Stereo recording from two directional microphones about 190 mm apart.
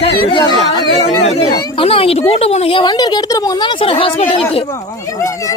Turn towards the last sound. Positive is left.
turn(degrees=30)  # may be behind; listen again after turning